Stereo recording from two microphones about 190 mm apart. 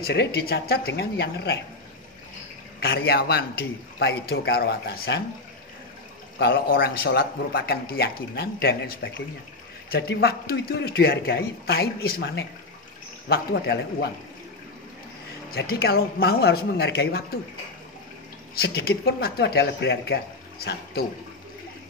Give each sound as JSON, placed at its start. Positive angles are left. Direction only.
{"t": 0.0, "sound": "speech", "side_deg": 60}
{"t": 2.8, "sound": "speech", "side_deg": 55}
{"t": 6.3, "sound": "speech", "side_deg": 55}
{"t": 15.5, "sound": "speech", "side_deg": 55}
{"t": 18.5, "sound": "speech", "side_deg": 55}